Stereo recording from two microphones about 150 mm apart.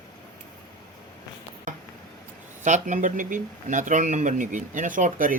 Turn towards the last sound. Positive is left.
turn(degrees=-60)  # may be behind; listen again after turning